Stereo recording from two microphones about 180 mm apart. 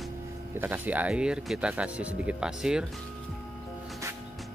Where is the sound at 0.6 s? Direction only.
10° right (ahead or behind).